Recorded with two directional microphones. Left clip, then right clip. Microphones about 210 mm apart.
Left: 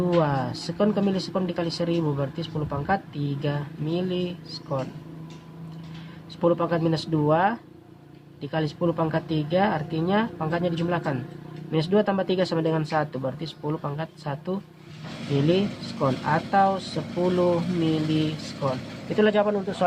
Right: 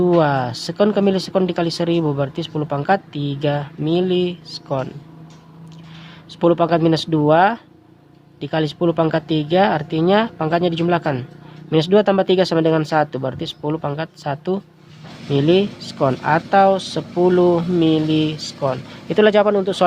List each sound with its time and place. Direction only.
0.0 s speech: 45° right (ahead or behind)
6.4 s speech: 45° right (ahead or behind)